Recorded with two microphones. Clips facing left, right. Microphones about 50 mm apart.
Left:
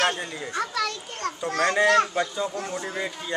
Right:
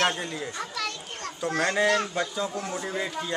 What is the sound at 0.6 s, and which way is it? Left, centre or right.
Speech, left.